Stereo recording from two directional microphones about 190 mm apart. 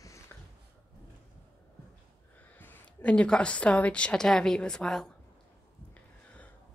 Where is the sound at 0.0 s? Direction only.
15° left (ahead or behind).